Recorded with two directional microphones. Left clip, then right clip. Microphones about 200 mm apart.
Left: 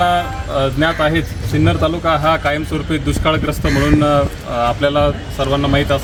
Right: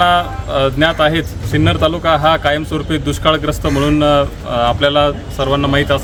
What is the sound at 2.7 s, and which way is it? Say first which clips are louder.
Speech: right 1 dB; centre (ahead or behind).